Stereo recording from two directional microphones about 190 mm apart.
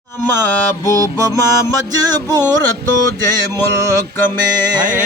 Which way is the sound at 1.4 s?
20° right (ahead or behind).